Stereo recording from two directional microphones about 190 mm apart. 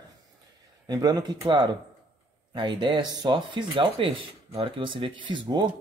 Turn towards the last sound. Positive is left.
turn(degrees=-25)  # may be behind; listen again after turning